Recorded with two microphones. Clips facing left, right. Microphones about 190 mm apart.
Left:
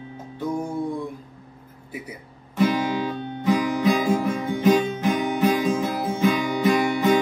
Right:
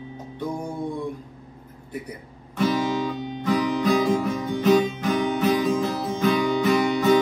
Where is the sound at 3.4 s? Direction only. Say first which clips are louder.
Left 1 dB; 10° left (ahead or behind).